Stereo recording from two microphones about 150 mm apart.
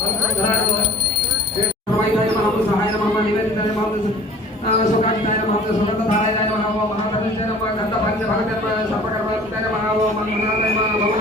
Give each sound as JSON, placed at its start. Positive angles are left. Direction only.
{"t": 4.6, "sound": "speech", "side_deg": 45}